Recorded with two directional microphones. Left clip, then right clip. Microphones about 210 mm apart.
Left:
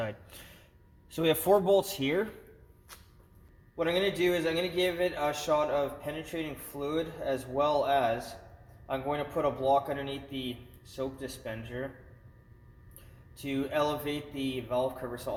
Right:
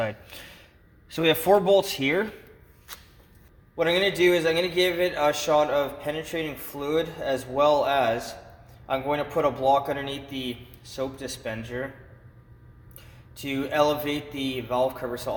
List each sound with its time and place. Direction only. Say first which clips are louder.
0.0 s a sound: right 7 dB; 5° right (ahead or behind)
1.1 s speech: right 5 dB; 5° right (ahead or behind)
3.8 s speech: right 6 dB; 30° right (ahead or behind)
13.3 s speech: right 6 dB; 30° right (ahead or behind)